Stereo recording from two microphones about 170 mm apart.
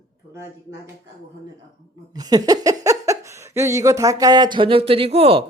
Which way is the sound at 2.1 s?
25° right (ahead or behind).